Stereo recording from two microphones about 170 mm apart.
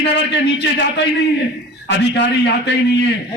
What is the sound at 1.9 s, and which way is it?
A man's voice, 90° left.